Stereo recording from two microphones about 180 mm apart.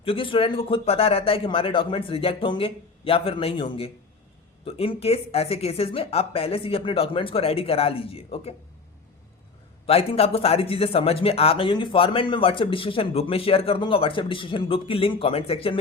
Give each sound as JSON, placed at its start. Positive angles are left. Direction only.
{"t": 0.0, "sound": "speech", "side_deg": 30}
{"t": 9.8, "sound": "speech", "side_deg": 30}